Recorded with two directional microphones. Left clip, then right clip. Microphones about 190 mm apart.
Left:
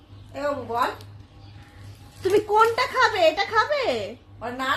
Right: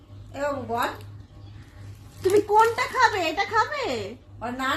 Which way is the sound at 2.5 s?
30° left (ahead or behind).